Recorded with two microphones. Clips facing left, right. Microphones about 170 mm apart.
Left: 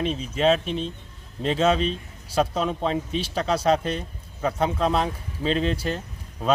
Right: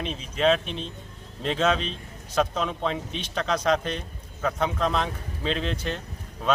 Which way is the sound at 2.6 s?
35° left (ahead or behind).